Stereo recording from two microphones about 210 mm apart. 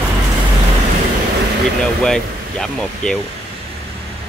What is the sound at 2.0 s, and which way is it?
Speech, 5° left (ahead or behind).